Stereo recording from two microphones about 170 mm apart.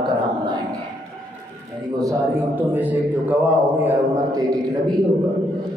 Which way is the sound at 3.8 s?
20° right (ahead or behind).